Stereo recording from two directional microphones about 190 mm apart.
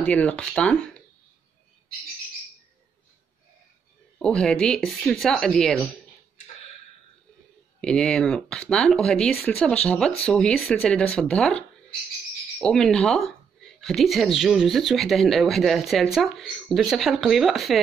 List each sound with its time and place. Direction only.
0.0 s speech: 5° left (ahead or behind)
4.2 s speech: 5° left (ahead or behind)
7.8 s speech: 5° left (ahead or behind)